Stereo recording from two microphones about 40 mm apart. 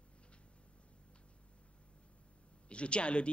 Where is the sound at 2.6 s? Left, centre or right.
Left.